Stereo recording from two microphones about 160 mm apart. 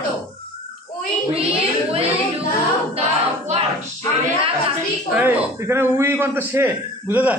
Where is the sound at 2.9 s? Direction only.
40° right (ahead or behind).